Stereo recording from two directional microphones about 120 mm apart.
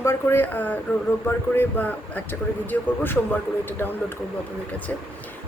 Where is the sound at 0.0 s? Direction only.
20° left (ahead or behind).